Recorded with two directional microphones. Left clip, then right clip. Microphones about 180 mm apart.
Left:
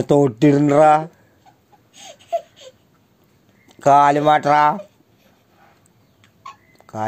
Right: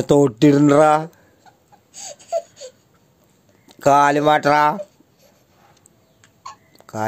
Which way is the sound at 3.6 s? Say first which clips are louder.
Left 1 dB; 15° right (ahead or behind).